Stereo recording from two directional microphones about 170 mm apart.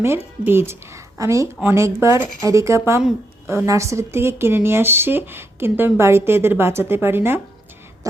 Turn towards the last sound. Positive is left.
turn(degrees=-15)  # may be behind; listen again after turning